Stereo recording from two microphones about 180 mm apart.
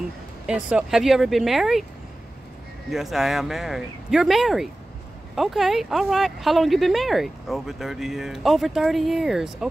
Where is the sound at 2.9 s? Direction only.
Centre (ahead or behind).